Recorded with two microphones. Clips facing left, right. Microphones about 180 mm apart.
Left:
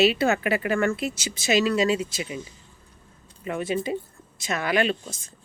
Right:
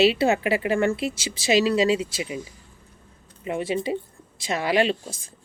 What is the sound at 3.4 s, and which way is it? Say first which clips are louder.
Speech: right 1 dB; 25° right (ahead or behind).